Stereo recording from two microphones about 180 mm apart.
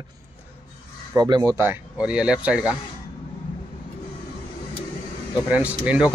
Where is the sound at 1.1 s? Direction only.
20° right (ahead or behind); by 2.8 s 5° right (ahead or behind).